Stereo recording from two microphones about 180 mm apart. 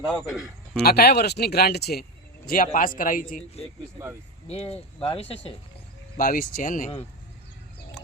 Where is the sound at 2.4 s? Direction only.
50° left (ahead or behind).